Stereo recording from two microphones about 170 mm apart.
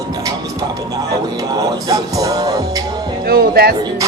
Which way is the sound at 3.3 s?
65° right (ahead or behind).